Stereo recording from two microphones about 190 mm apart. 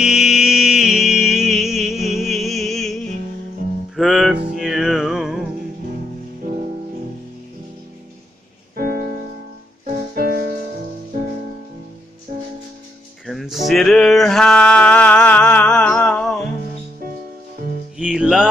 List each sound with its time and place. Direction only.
0.0 s music: 5° right (ahead or behind)
6.4 s music: 40° right (ahead or behind)
8.7 s music: 50° right (ahead or behind)
13.3 s music: centre (ahead or behind)
17.9 s music: 5° right (ahead or behind)